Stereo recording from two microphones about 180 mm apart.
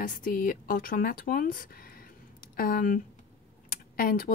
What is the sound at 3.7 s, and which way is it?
Computer keyboard, 55° left (ahead or behind).